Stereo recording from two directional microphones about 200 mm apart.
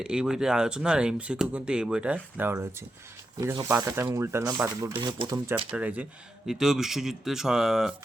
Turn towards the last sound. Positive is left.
turn(degrees=0)  # may be behind; listen again after turning